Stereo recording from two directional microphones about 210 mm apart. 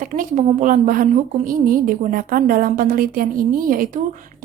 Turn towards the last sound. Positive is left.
turn(degrees=-40)  # may be behind; listen again after turning